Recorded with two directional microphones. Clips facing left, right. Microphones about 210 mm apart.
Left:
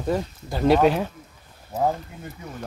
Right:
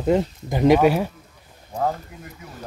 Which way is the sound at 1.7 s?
5° left (ahead or behind).